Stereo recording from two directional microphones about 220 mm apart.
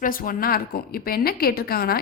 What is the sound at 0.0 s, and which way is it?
A woman's voice, 40° left (ahead or behind).